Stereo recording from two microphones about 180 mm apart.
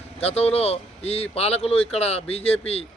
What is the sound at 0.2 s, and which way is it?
A man's voice, 35° left (ahead or behind).